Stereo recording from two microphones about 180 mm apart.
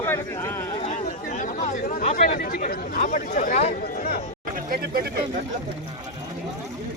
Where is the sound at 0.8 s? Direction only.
40° left (ahead or behind).